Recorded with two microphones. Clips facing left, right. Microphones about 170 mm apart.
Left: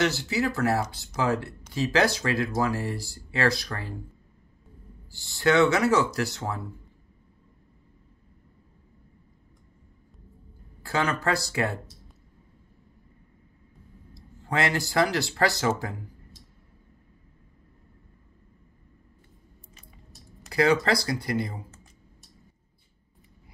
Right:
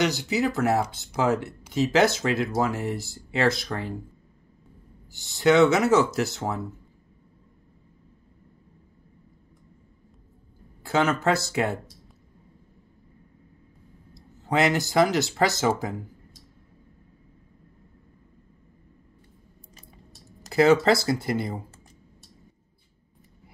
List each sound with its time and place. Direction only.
0.0 s speech: 20° right (ahead or behind)
5.1 s speech: 20° right (ahead or behind)
10.8 s speech: 20° right (ahead or behind)
14.1 s speech: 20° right (ahead or behind)
20.4 s a sound: 25° right (ahead or behind)
20.8 s speech: 25° right (ahead or behind)